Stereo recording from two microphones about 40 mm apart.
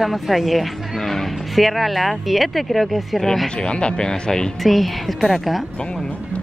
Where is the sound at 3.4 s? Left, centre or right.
Left.